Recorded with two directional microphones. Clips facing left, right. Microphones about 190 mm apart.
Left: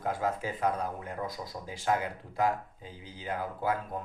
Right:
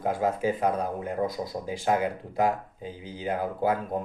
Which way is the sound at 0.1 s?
20° right (ahead or behind).